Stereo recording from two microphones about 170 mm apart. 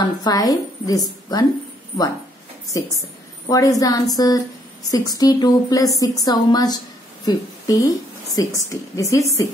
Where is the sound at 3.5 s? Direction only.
20° left (ahead or behind).